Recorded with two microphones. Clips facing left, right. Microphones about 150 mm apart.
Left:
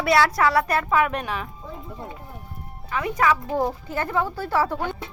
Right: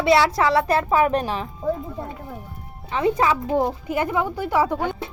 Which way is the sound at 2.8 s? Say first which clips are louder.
Right 2 dB; 25° right (ahead or behind).